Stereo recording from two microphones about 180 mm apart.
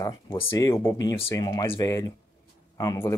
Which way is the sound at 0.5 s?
15° left (ahead or behind).